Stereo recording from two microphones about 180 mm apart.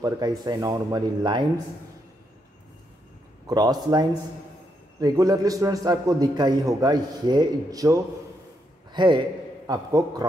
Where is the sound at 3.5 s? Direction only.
20° right (ahead or behind).